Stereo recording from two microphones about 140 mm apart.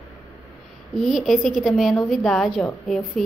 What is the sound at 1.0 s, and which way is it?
A woman's voice, centre (ahead or behind).